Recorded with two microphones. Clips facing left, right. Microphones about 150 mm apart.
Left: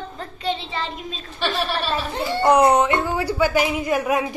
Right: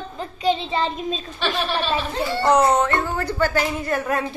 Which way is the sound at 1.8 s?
10° left (ahead or behind).